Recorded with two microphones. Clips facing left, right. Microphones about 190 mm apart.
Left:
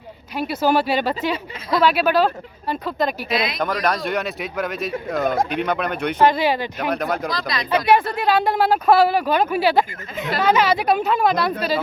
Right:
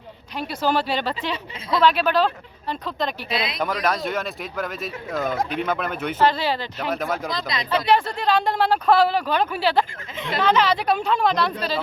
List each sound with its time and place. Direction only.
0.3 s speech: 5° left (ahead or behind)
3.2 s speech: 30° right (ahead or behind)
3.6 s speech: 5° right (ahead or behind)
6.1 s speech: 15° left (ahead or behind)
6.9 s speech: 5° right (ahead or behind)
7.3 s speech: 20° right (ahead or behind)
7.7 s speech: 10° left (ahead or behind)